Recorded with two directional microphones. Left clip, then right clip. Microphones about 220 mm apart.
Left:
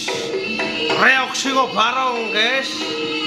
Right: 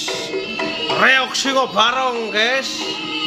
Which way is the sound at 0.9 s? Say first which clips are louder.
Right 1 dB; 15° right (ahead or behind).